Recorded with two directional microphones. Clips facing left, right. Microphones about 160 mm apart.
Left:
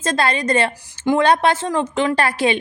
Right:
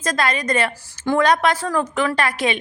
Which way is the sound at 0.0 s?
30° left (ahead or behind).